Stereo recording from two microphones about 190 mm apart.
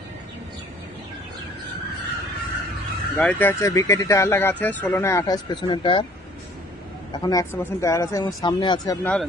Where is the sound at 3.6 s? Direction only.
15° left (ahead or behind).